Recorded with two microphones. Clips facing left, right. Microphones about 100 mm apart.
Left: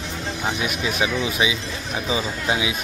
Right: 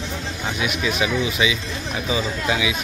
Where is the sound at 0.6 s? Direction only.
30° left (ahead or behind).